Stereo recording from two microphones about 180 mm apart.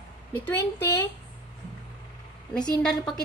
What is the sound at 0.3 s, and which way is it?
Speech, 10° left (ahead or behind).